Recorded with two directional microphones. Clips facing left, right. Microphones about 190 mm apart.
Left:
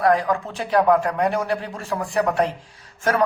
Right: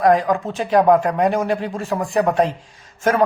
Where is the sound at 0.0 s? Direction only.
20° right (ahead or behind).